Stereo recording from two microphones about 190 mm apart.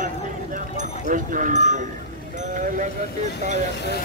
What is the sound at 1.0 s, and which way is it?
Speech, 45° right (ahead or behind).